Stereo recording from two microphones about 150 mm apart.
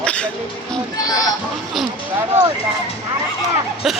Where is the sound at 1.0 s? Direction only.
25° left (ahead or behind).